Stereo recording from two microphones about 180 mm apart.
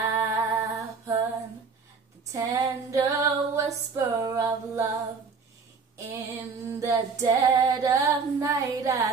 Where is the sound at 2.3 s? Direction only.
20° right (ahead or behind).